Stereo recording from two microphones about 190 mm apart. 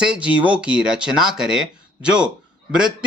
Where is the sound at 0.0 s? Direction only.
5° right (ahead or behind).